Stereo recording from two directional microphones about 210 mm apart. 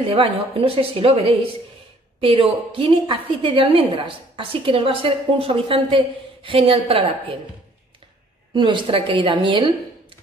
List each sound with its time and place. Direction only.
0.0 s a woman's voice: 25° right (ahead or behind)
8.5 s a woman's voice: 25° right (ahead or behind)